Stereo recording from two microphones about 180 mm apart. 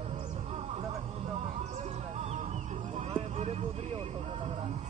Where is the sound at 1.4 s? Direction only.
40° right (ahead or behind).